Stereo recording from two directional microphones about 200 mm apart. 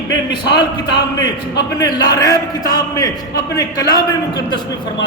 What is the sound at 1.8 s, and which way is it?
A man's voice, 20° left (ahead or behind).